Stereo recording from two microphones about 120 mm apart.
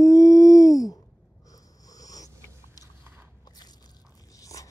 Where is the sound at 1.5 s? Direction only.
30° left (ahead or behind).